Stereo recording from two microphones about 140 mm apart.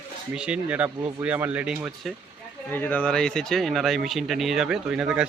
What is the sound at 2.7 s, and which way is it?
Speech, 15° left (ahead or behind).